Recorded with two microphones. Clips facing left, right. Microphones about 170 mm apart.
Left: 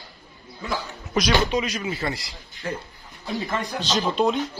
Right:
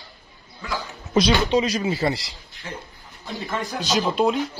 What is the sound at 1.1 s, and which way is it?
Speech, 30° right (ahead or behind).